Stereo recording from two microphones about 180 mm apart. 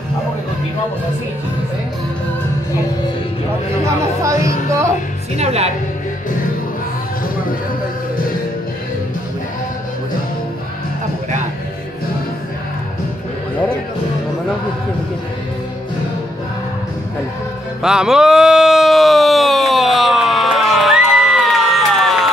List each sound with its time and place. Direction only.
3.8 s speech: 15° right (ahead or behind)
5.3 s a woman's voice: 35° right (ahead or behind)
17.8 s a sound: 5° right (ahead or behind)